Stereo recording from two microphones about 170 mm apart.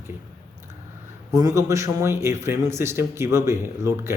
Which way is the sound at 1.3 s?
20° right (ahead or behind).